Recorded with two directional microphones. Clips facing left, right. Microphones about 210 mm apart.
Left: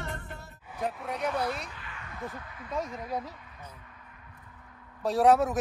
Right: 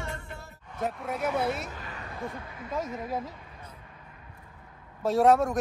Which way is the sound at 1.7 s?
40° right (ahead or behind).